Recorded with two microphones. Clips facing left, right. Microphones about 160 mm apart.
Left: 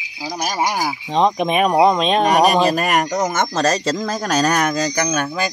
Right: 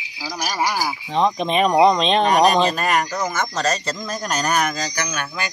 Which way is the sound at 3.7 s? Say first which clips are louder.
Left 5 dB; 90° left.